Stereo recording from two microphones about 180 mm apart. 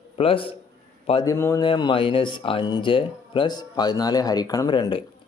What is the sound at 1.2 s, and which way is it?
Speech, 15° left (ahead or behind).